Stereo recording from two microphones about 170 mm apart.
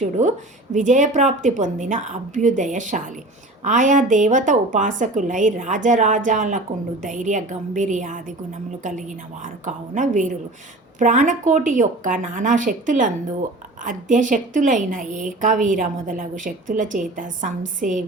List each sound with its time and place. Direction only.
0.0 s a woman's voice: 45° right (ahead or behind)